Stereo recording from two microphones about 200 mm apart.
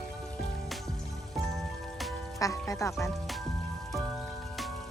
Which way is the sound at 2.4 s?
15° left (ahead or behind).